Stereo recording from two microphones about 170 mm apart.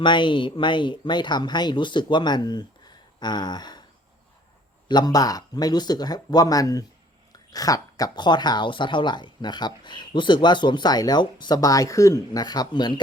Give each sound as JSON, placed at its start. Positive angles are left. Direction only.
{"t": 0.0, "sound": "speech", "side_deg": 30}
{"t": 4.9, "sound": "speech", "side_deg": 25}